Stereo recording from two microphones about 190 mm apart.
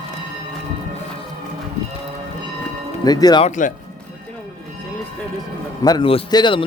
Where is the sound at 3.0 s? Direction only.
20° left (ahead or behind).